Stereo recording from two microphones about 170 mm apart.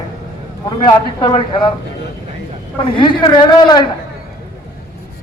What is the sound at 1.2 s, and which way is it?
Speech, 30° left (ahead or behind).